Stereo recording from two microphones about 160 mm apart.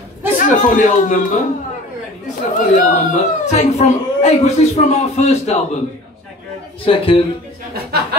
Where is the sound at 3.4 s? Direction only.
45° left (ahead or behind).